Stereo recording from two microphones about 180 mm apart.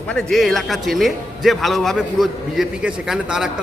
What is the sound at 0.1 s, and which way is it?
A man's voice, centre (ahead or behind).